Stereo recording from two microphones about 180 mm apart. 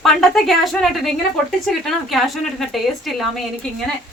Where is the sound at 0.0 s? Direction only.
Centre (ahead or behind).